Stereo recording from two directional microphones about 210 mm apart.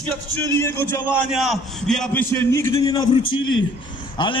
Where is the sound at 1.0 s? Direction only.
Centre (ahead or behind).